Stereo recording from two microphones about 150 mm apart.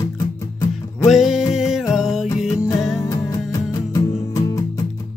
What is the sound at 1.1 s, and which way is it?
Music, centre (ahead or behind).